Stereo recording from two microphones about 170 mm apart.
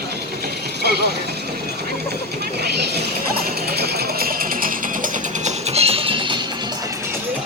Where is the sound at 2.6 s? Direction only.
75° right (ahead or behind); by 6.4 s 30° right (ahead or behind).